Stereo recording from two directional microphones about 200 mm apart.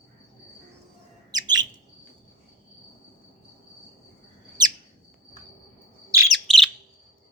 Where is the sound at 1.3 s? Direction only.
20° right (ahead or behind).